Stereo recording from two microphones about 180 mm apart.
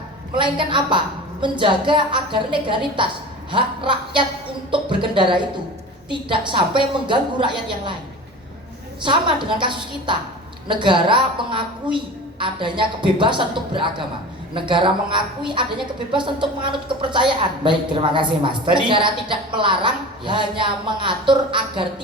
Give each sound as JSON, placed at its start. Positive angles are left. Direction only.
{"t": 0.3, "sound": "a woman's voice", "side_deg": -25}
{"t": 9.0, "sound": "a woman's voice", "side_deg": -25}